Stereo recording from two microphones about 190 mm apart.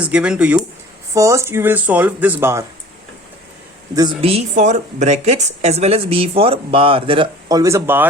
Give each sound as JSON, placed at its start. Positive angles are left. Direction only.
{"t": 0.0, "sound": "speech", "side_deg": -5}
{"t": 4.2, "sound": "a woman's voice", "side_deg": -30}